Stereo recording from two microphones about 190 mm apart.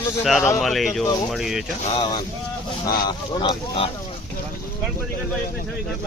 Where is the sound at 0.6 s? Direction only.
Centre (ahead or behind).